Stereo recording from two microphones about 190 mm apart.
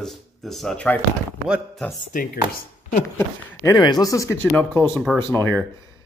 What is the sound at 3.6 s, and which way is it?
Speech, 20° left (ahead or behind).